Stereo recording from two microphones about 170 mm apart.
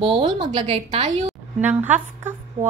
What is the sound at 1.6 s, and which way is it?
A woman's voice, 10° right (ahead or behind).